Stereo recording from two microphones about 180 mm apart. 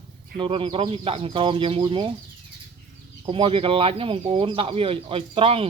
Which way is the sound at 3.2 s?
30° right (ahead or behind).